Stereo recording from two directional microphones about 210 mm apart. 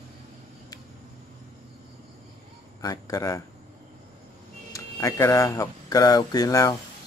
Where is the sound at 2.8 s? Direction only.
15° left (ahead or behind).